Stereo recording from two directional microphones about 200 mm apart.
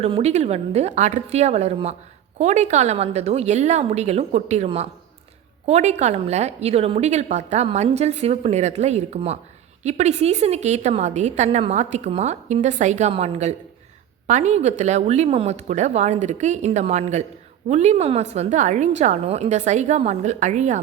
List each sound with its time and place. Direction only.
0.0 s a woman's voice: 30° right (ahead or behind)